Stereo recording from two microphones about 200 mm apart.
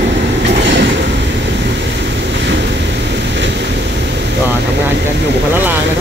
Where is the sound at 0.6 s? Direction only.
60° right (ahead or behind).